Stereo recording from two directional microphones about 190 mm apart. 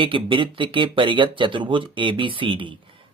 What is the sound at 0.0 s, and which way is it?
Speech, 25° right (ahead or behind).